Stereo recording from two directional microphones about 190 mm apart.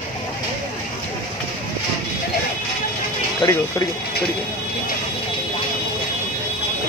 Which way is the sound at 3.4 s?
15° left (ahead or behind).